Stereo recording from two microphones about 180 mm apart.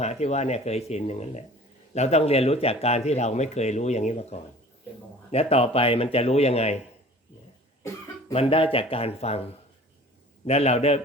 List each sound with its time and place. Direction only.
0.0 s speech: 40° left (ahead or behind)
8.3 s speech: 30° left (ahead or behind)
10.4 s speech: 35° left (ahead or behind)